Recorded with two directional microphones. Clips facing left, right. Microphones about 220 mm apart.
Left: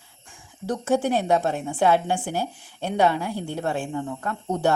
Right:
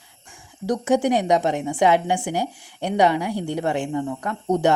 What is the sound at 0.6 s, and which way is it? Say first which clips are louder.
A woman's voice: right 3 dB; 15° right (ahead or behind).